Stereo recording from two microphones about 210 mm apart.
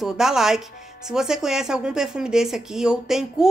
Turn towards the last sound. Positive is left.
turn(degrees=-5)  # may be behind; listen again after turning